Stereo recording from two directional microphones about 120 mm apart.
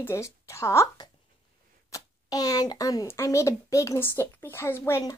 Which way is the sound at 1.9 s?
30° left (ahead or behind).